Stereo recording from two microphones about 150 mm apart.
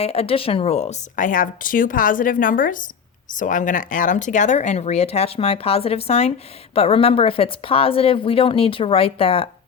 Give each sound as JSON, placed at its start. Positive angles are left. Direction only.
{"t": 0.0, "sound": "speech", "side_deg": 40}